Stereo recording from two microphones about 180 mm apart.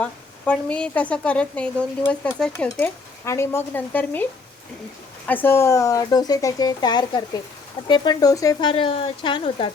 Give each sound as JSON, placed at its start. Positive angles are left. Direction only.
{"t": 0.0, "sound": "speech", "side_deg": 5}